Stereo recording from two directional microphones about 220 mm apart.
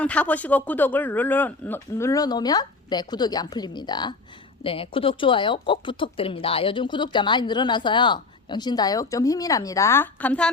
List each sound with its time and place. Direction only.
0.0 s speech: 5° left (ahead or behind)